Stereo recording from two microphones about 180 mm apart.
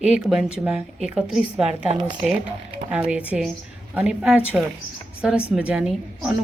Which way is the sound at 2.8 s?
5° right (ahead or behind).